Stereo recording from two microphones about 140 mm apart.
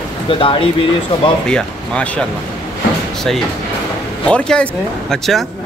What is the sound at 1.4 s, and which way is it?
Speech, 5° left (ahead or behind).